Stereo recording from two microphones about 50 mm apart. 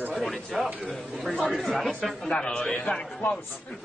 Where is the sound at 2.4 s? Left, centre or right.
Centre.